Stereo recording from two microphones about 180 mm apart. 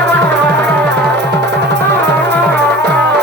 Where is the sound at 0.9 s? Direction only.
70° right (ahead or behind).